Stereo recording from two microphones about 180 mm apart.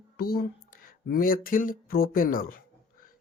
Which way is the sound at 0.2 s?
55° left (ahead or behind).